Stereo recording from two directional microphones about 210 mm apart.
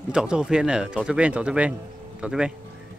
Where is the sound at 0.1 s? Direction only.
5° right (ahead or behind).